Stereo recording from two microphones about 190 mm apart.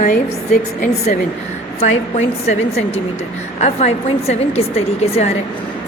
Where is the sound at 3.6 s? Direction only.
35° left (ahead or behind).